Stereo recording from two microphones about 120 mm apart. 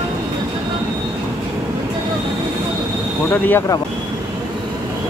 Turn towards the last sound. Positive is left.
turn(degrees=15)  # may be behind; listen again after turning